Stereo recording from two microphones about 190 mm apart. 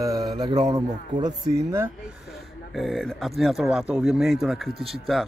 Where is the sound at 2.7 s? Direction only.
Centre (ahead or behind).